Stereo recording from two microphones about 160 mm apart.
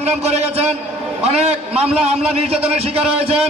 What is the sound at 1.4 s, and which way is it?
A man's voice, 40° right (ahead or behind).